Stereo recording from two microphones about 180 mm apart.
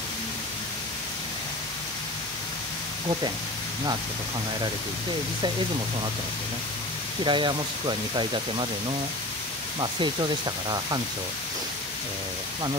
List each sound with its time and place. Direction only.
7.2 s speech: 25° right (ahead or behind)
9.8 s speech: 25° right (ahead or behind)